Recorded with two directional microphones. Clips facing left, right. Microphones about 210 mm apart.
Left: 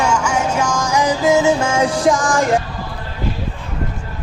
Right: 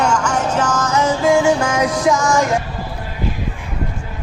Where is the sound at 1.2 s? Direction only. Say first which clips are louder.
Even; 20° left (ahead or behind).